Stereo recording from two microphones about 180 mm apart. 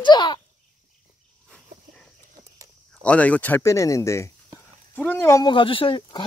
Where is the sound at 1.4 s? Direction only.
5° left (ahead or behind).